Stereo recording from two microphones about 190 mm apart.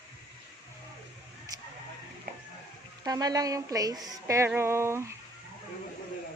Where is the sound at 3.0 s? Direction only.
20° right (ahead or behind).